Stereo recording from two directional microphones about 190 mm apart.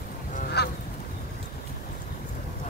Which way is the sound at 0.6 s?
60° left (ahead or behind).